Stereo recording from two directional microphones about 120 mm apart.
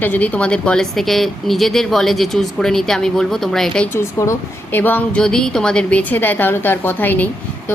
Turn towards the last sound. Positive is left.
turn(degrees=15)  # may be behind; listen again after turning